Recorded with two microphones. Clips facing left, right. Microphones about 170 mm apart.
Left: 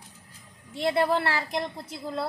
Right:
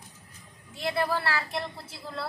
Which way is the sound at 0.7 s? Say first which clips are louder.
Left 5 dB; 25° left (ahead or behind).